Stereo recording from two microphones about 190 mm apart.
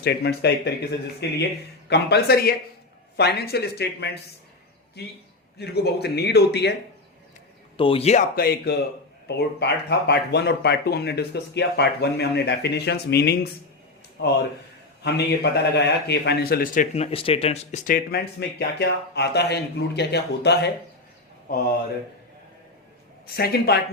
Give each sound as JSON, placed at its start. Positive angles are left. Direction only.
{"t": 0.0, "sound": "a man's voice", "side_deg": 60}
{"t": 5.5, "sound": "a man's voice", "side_deg": 60}
{"t": 7.8, "sound": "speech", "side_deg": 30}
{"t": 8.4, "sound": "a man's voice", "side_deg": 55}
{"t": 23.2, "sound": "speech", "side_deg": 55}